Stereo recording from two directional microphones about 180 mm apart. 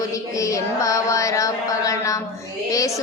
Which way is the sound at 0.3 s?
15° left (ahead or behind).